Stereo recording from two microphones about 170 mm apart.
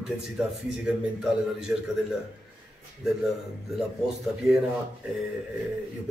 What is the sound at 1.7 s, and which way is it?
Speech, 5° right (ahead or behind).